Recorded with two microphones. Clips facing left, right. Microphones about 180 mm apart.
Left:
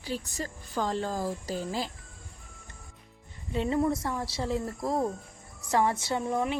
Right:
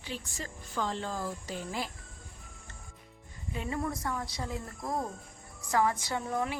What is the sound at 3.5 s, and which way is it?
A woman's voice, 25° left (ahead or behind).